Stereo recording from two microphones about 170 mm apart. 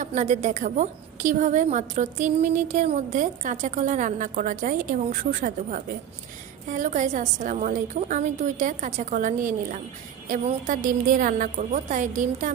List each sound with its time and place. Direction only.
0.0 s a woman's voice: 45° right (ahead or behind)